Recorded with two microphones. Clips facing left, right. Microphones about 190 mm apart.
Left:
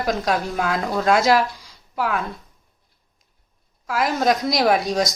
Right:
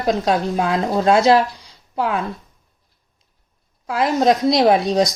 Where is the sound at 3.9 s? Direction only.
30° right (ahead or behind).